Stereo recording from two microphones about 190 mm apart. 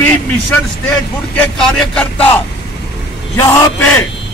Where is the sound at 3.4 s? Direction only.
15° left (ahead or behind).